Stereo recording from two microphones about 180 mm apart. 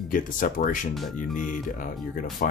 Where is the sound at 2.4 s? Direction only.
50° left (ahead or behind).